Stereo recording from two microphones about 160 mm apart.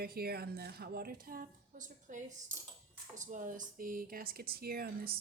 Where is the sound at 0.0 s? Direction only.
75° right (ahead or behind); by 2.2 s 55° right (ahead or behind).